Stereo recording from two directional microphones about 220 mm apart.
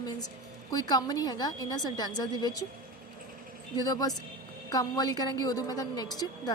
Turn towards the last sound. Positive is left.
turn(degrees=15)  # may be behind; listen again after turning